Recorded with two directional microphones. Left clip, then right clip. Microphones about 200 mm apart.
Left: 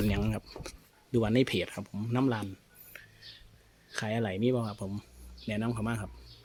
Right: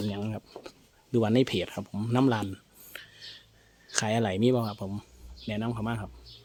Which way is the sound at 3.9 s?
20° right (ahead or behind).